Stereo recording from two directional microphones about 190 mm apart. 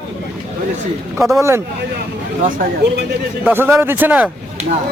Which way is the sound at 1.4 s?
15° right (ahead or behind).